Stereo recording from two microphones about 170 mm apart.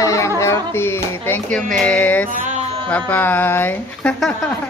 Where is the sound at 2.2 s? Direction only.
50° right (ahead or behind).